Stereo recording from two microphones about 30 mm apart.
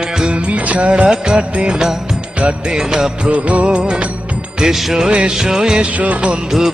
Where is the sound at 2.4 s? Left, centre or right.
Right.